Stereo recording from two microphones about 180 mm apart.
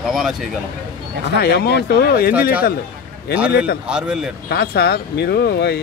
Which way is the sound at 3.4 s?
5° right (ahead or behind).